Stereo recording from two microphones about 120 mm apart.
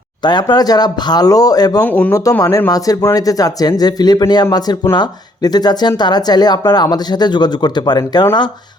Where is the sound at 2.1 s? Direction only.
30° left (ahead or behind).